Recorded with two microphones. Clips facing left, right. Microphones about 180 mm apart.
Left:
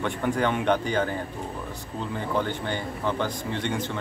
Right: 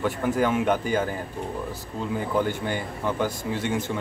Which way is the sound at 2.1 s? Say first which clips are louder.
Right 3 dB; 10° right (ahead or behind).